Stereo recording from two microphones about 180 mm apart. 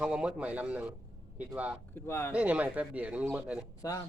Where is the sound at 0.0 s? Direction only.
5° right (ahead or behind).